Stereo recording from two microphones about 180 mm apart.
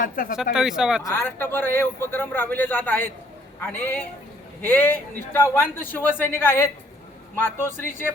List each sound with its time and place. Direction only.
0.0 s speech: 50° left (ahead or behind)
0.5 s speech: 5° right (ahead or behind)
1.0 s a man's voice: 15° left (ahead or behind)